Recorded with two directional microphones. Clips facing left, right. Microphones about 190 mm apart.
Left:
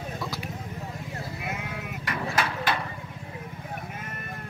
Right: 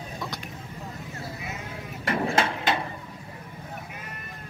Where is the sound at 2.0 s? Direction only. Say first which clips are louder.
Right 5 dB; 25° right (ahead or behind).